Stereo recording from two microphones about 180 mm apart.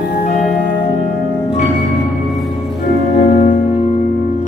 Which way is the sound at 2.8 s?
45° left (ahead or behind).